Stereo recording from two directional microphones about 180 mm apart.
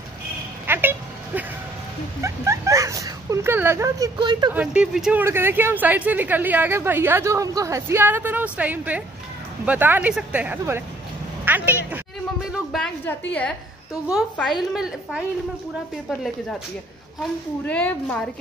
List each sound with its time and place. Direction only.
0.7 s a sound: 10° right (ahead or behind)
2.2 s speech: 15° right (ahead or behind)
4.6 s a woman's voice: 5° right (ahead or behind)
12.5 s a sound: centre (ahead or behind)
13.3 s a woman's voice: 5° left (ahead or behind)
14.6 s speech: centre (ahead or behind)
17.2 s a woman's voice: 10° left (ahead or behind)